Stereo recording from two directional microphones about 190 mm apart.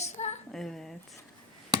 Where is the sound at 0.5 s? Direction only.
Centre (ahead or behind).